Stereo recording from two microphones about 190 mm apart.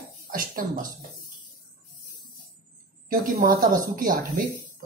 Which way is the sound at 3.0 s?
50° right (ahead or behind).